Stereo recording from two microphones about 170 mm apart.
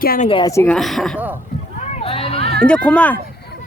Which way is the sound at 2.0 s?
35° left (ahead or behind).